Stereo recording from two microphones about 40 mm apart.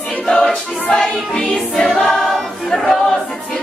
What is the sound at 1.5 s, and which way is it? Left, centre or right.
Choir, centre.